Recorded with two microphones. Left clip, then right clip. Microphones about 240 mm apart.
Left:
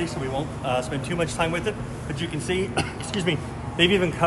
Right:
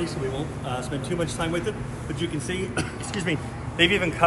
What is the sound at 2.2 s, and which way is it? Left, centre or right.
Speech, centre.